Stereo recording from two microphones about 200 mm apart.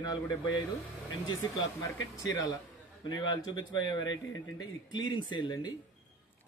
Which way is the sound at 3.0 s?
20° left (ahead or behind).